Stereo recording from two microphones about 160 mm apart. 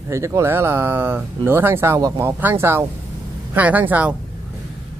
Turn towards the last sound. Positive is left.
turn(degrees=-10)  # may be behind; listen again after turning